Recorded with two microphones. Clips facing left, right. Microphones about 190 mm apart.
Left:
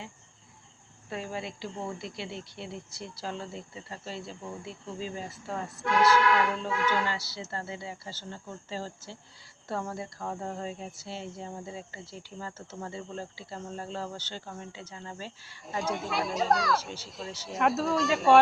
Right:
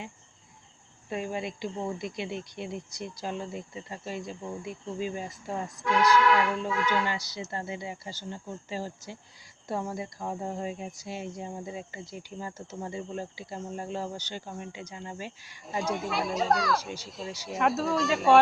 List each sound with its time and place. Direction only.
1.1 s speech: 20° right (ahead or behind)
15.6 s speech: centre (ahead or behind)